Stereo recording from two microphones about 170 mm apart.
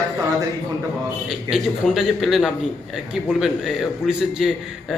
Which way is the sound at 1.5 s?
Centre (ahead or behind).